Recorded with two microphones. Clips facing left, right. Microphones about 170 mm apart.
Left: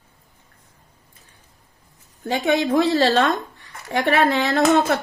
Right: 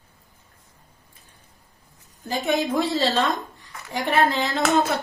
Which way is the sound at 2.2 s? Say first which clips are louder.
Left 4 dB; 65° left (ahead or behind).